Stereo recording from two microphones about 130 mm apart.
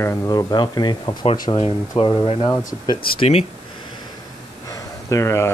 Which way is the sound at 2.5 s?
25° left (ahead or behind).